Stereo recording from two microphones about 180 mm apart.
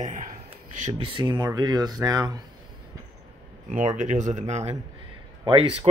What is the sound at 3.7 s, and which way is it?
Speech, 40° right (ahead or behind).